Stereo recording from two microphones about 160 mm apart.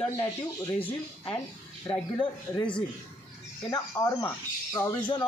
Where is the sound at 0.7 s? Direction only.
10° left (ahead or behind).